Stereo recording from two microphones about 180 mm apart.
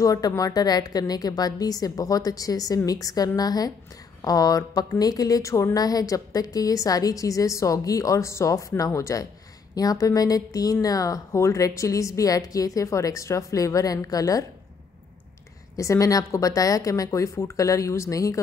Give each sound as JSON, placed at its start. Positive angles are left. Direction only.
{"t": 0.0, "sound": "a woman's voice", "side_deg": 20}
{"t": 15.7, "sound": "speech", "side_deg": 15}